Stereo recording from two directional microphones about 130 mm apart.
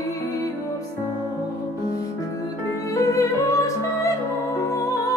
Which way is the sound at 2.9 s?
25° left (ahead or behind).